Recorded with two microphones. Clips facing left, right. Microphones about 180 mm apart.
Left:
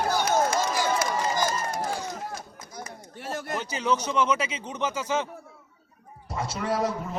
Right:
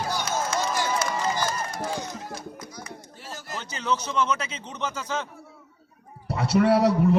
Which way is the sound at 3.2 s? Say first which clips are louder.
Left 6 dB; 60° left (ahead or behind).